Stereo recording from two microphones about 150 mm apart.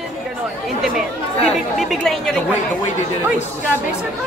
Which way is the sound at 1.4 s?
Centre (ahead or behind).